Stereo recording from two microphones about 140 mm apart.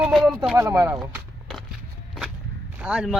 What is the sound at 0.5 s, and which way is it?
Speech, 20° right (ahead or behind).